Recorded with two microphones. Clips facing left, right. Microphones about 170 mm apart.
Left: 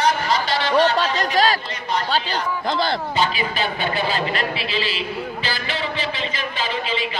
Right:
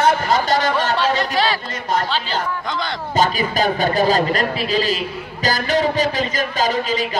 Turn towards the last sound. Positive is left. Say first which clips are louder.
# right 5 dB
turn(degrees=-40)  # may be behind; listen again after turning